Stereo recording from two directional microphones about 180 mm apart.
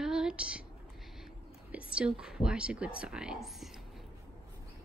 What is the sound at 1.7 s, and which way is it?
Speech, 5° right (ahead or behind).